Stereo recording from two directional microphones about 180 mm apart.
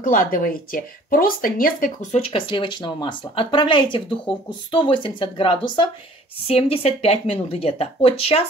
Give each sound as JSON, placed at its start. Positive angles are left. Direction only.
{"t": 0.0, "sound": "speech", "side_deg": 50}